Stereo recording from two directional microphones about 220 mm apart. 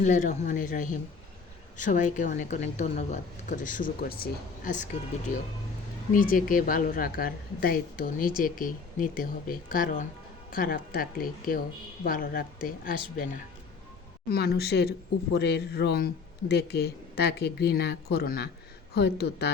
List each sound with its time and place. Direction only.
0.0 s speech: 35° left (ahead or behind)
6.1 s speech: 40° left (ahead or behind)
14.3 s a man's voice: 45° left (ahead or behind)